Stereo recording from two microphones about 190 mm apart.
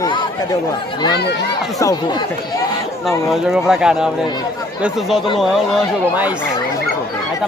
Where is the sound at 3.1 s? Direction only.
Centre (ahead or behind).